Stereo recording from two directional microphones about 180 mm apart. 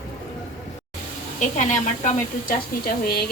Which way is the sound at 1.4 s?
45° left (ahead or behind).